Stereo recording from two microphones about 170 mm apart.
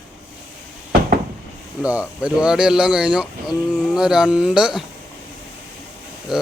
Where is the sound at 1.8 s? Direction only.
5° right (ahead or behind).